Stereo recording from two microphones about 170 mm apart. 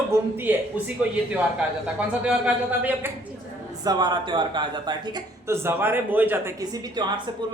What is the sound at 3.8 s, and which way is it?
Speech, 25° right (ahead or behind).